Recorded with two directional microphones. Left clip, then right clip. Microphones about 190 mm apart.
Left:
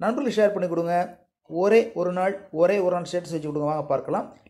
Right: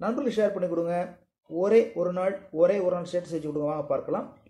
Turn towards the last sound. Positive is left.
turn(degrees=25)  # may be behind; listen again after turning